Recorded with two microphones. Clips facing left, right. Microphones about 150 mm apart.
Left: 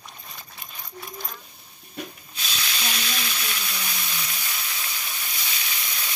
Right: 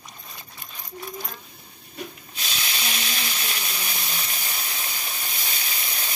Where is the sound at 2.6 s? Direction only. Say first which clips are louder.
Left 1 dB; 30° right (ahead or behind).